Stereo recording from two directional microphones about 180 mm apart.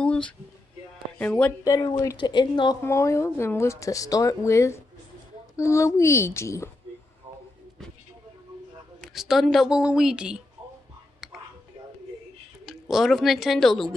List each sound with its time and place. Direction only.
0.0 s music: 5° left (ahead or behind)
1.1 s speech: 10° left (ahead or behind)
1.7 s speech: 20° left (ahead or behind)
9.0 s a woman's voice: centre (ahead or behind)
12.6 s a woman's voice: centre (ahead or behind)